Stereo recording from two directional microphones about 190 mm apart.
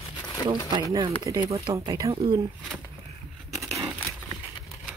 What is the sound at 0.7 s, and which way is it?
Speech, 20° right (ahead or behind).